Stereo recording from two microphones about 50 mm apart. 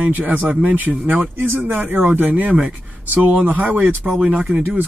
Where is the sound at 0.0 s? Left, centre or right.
Right.